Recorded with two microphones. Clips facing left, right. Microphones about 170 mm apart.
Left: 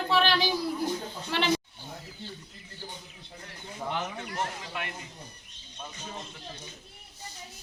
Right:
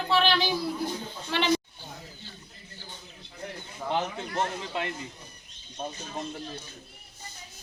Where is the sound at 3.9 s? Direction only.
25° right (ahead or behind).